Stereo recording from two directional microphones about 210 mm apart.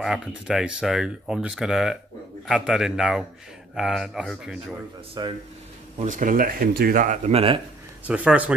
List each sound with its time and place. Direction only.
0.0 s speech: 5° right (ahead or behind)
5.2 s speech: 20° right (ahead or behind)
5.9 s speech: 35° right (ahead or behind)
8.1 s speech: 5° right (ahead or behind)